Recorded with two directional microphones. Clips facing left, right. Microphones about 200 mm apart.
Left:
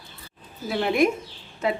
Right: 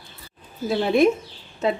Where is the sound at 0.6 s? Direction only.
25° right (ahead or behind).